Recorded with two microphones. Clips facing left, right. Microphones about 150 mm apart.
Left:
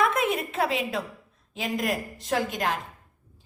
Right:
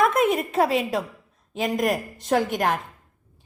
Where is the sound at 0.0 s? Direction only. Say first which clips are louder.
Right 4 dB; 45° right (ahead or behind).